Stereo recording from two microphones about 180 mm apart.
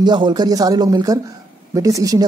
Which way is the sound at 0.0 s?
25° right (ahead or behind).